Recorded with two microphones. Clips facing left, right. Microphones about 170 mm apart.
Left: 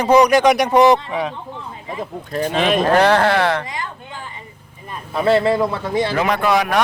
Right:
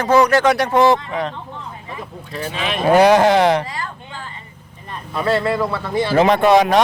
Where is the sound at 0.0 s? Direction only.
15° left (ahead or behind).